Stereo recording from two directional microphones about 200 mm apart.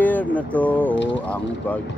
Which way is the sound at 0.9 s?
65° left (ahead or behind).